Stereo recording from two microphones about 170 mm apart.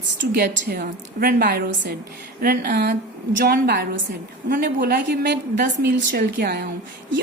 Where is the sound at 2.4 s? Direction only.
60° right (ahead or behind).